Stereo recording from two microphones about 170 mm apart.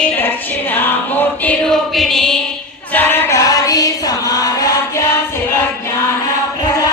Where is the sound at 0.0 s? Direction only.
10° left (ahead or behind).